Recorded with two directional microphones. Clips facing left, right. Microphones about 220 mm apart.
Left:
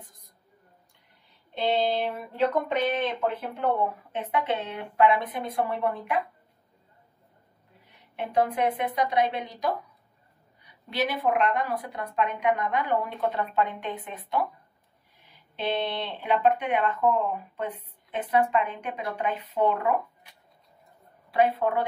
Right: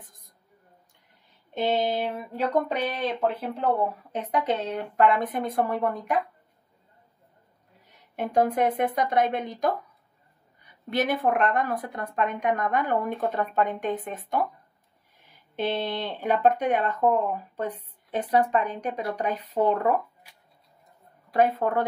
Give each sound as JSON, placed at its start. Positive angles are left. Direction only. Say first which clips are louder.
{"t": 1.5, "sound": "speech", "louder": "even", "side_deg": -45}
{"t": 7.8, "sound": "speech", "louder": "right 3 dB", "side_deg": -45}
{"t": 15.5, "sound": "speech", "louder": "right 1 dB", "side_deg": -45}
{"t": 21.3, "sound": "speech", "louder": "right 1 dB", "side_deg": -45}